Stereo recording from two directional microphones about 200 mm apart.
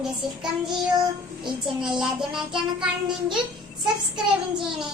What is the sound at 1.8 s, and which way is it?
Child singing, 5° right (ahead or behind).